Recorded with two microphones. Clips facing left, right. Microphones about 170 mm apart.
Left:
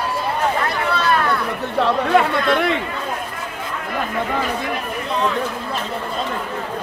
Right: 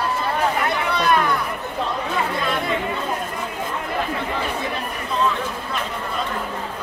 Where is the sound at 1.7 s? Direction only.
70° left (ahead or behind).